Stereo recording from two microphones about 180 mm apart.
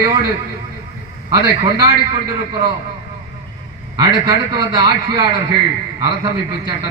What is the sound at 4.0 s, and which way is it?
A man's voice, 25° right (ahead or behind).